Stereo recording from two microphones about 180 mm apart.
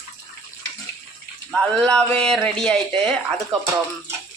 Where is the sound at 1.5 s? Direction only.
5° left (ahead or behind).